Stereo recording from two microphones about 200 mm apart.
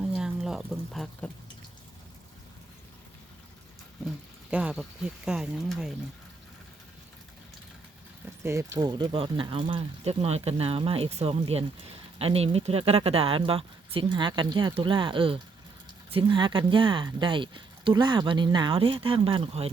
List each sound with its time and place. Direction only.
0.1 s a sound: 5° right (ahead or behind)
4.5 s speech: 5° right (ahead or behind)
8.4 s speech: 15° right (ahead or behind)